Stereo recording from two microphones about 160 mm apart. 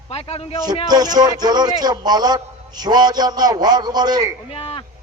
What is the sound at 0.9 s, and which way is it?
A man's voice, 25° right (ahead or behind).